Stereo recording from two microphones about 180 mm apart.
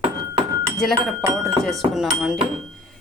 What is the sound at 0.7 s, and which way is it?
A woman's voice, centre (ahead or behind).